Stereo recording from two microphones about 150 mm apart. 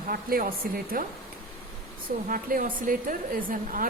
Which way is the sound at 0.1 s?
75° right (ahead or behind).